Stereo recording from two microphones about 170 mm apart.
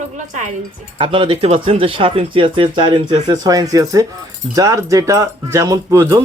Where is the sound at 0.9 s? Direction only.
35° right (ahead or behind); by 6.2 s 20° right (ahead or behind).